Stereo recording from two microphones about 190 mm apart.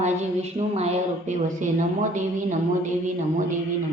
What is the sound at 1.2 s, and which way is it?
A man's voice, 40° right (ahead or behind).